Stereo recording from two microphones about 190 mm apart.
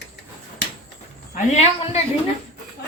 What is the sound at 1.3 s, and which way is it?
Speech, 35° left (ahead or behind).